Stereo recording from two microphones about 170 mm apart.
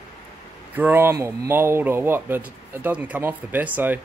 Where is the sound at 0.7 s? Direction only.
10° right (ahead or behind).